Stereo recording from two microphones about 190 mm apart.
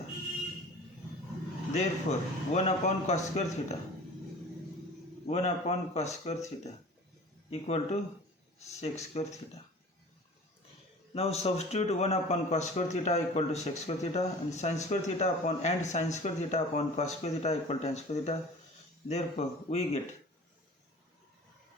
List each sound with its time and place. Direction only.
1.7 s speech: 35° left (ahead or behind)
5.2 s speech: 35° left (ahead or behind)
11.1 s speech: 35° left (ahead or behind)